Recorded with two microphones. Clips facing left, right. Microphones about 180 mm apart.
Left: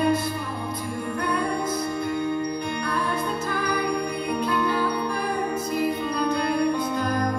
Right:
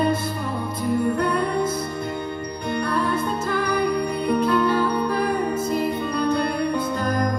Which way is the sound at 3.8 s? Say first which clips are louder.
Right 4 dB; 50° right (ahead or behind).